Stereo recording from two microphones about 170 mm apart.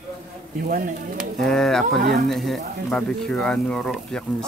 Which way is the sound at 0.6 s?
55° right (ahead or behind).